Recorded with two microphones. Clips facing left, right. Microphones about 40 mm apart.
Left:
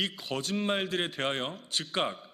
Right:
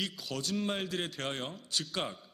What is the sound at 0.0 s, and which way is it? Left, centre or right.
A man's voice, left.